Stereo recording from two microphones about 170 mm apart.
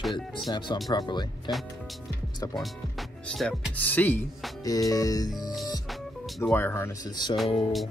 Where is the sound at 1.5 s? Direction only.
Centre (ahead or behind); by 5.3 s 20° left (ahead or behind).